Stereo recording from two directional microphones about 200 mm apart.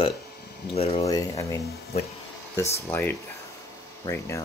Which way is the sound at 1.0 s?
15° left (ahead or behind).